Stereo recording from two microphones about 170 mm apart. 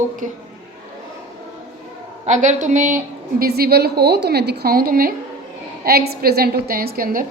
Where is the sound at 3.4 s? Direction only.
65° right (ahead or behind).